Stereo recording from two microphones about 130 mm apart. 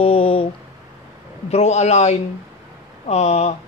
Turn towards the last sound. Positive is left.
turn(degrees=60)  # may be behind; listen again after turning